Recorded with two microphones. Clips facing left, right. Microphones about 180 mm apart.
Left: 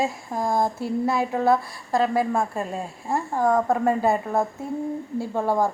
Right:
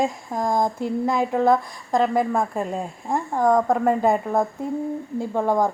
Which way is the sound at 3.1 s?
5° left (ahead or behind).